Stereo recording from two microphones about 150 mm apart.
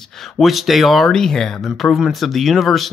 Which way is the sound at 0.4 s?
Centre (ahead or behind).